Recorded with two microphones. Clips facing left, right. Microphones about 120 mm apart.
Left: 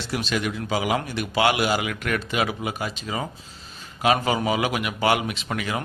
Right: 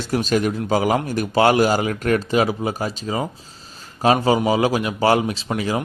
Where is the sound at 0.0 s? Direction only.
45° right (ahead or behind).